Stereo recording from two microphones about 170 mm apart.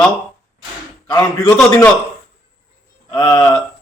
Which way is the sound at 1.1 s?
15° left (ahead or behind).